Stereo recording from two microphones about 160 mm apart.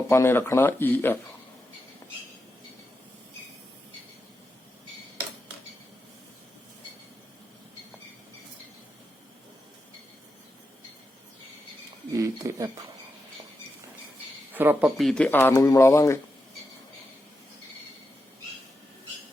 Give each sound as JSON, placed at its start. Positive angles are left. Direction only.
{"t": 0.1, "sound": "speech", "side_deg": 15}
{"t": 12.1, "sound": "speech", "side_deg": -20}
{"t": 14.5, "sound": "speech", "side_deg": -10}